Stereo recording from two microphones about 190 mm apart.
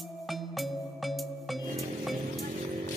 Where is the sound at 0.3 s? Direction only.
Centre (ahead or behind).